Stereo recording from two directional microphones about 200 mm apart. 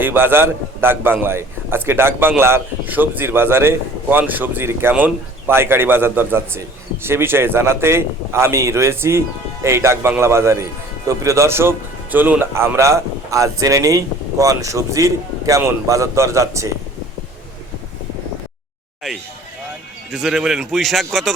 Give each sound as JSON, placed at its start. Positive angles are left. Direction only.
{"t": 0.0, "sound": "a man's voice", "side_deg": -10}
{"t": 20.1, "sound": "a man's voice", "side_deg": 0}